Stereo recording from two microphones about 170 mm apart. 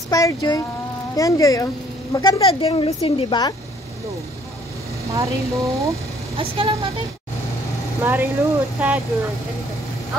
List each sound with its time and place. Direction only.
0.1 s speech: 20° left (ahead or behind)
2.4 s a woman's voice: 30° left (ahead or behind)
5.1 s speech: 20° right (ahead or behind)
6.3 s speech: 35° right (ahead or behind)
8.0 s speech: 10° right (ahead or behind)